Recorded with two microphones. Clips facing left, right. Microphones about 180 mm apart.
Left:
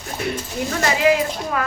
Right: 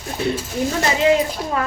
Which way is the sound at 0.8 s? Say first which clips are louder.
Even; 25° right (ahead or behind).